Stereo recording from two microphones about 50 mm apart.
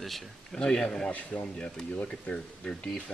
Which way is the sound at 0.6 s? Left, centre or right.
Centre.